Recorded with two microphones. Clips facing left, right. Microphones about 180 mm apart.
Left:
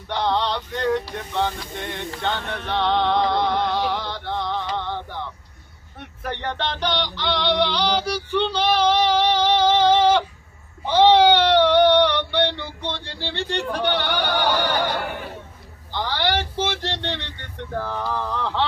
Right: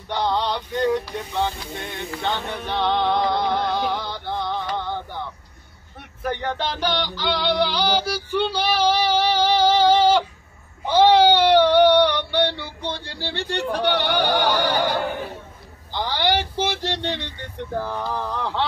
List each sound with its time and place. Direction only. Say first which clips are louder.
0.1 s male singing: even; centre (ahead or behind)
1.3 s music: left 1 dB; 10° right (ahead or behind)
6.2 s synthetic singing: right 2 dB; 5° right (ahead or behind)
10.9 s a sound: even; 10° right (ahead or behind)
15.9 s speech: right 1 dB; 15° right (ahead or behind)